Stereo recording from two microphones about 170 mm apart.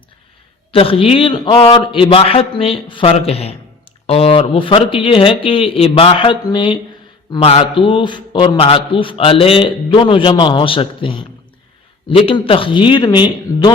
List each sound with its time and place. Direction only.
0.7 s a man's voice: 35° left (ahead or behind)